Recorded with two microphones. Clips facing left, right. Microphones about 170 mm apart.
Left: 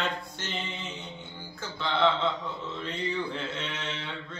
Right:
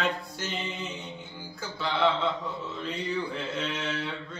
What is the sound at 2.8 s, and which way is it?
Music, 5° right (ahead or behind).